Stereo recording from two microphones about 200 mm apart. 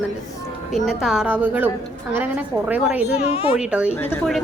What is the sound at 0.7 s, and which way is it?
A woman's voice, centre (ahead or behind).